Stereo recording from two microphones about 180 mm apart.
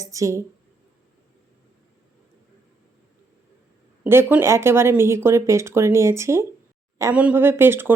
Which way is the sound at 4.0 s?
10° right (ahead or behind).